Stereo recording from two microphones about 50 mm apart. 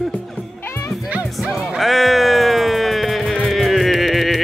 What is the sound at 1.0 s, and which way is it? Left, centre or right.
Music, right.